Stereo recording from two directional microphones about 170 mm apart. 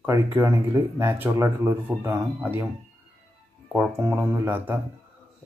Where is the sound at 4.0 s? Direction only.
15° right (ahead or behind).